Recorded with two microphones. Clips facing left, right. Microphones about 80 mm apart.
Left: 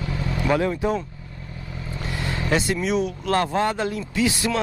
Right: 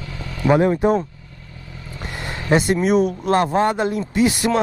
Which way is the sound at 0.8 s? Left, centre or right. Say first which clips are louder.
Right 6 dB; right.